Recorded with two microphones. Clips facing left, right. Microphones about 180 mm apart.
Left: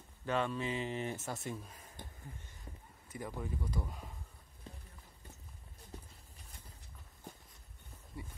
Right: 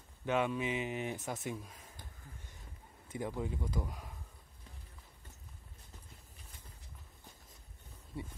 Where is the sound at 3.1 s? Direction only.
20° right (ahead or behind).